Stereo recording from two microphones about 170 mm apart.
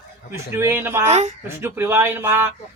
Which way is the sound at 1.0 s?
40° right (ahead or behind).